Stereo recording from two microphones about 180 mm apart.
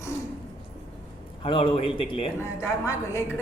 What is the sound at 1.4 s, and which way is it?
Speech, 30° left (ahead or behind).